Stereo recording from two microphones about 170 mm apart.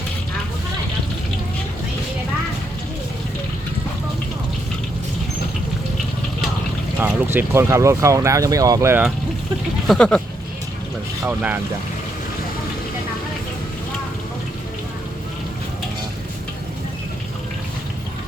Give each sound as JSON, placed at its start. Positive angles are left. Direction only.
{"t": 7.0, "sound": "speech", "side_deg": -15}
{"t": 9.8, "sound": "speech", "side_deg": 5}
{"t": 11.2, "sound": "speech", "side_deg": -10}